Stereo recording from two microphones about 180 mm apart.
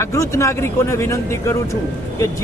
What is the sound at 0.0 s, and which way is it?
Speech, 15° left (ahead or behind).